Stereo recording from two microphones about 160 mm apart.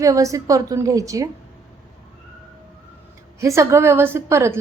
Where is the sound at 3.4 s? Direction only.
20° right (ahead or behind).